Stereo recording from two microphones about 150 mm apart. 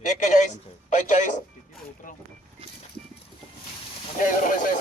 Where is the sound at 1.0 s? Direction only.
55° left (ahead or behind).